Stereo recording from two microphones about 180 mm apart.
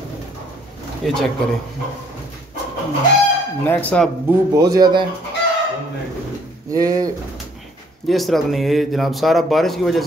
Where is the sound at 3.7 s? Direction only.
10° left (ahead or behind).